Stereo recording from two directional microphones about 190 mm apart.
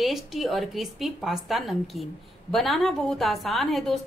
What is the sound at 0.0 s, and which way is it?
A woman's voice, centre (ahead or behind).